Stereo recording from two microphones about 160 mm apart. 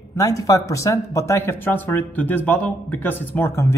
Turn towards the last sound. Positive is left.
turn(degrees=15)  # may be behind; listen again after turning